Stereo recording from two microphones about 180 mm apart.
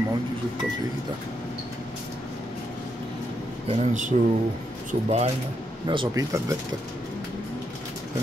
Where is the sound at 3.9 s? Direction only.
45° right (ahead or behind).